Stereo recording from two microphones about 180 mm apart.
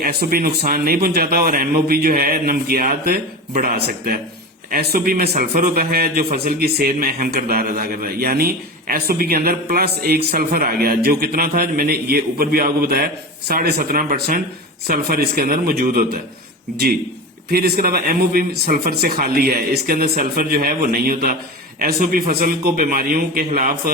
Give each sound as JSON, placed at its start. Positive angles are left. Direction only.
{"t": 0.0, "sound": "a man's voice", "side_deg": -55}